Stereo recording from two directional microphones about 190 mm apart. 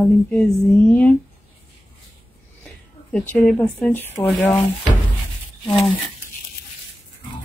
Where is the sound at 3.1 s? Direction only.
5° left (ahead or behind).